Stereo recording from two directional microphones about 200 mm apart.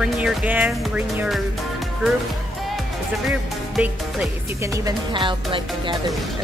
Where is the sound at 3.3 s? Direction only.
Centre (ahead or behind).